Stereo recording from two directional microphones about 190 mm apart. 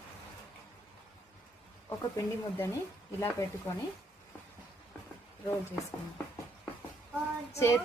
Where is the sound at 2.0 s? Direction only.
15° left (ahead or behind).